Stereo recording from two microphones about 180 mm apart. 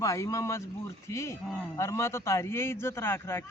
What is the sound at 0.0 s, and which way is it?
A man's voice, 15° left (ahead or behind).